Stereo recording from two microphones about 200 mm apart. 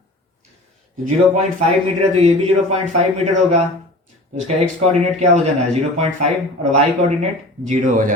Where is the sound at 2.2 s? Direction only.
35° right (ahead or behind).